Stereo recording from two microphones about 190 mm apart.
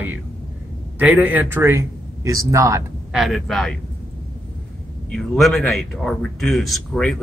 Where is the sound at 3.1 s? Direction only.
Centre (ahead or behind).